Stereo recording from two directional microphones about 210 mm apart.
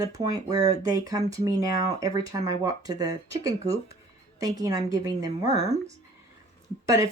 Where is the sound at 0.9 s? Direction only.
15° right (ahead or behind).